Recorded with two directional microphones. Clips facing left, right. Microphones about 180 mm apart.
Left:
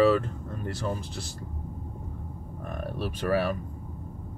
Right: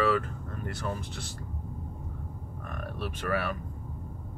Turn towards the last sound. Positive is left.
turn(degrees=30)  # may be behind; listen again after turning